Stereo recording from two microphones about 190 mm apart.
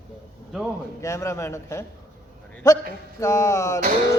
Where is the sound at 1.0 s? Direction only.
15° left (ahead or behind).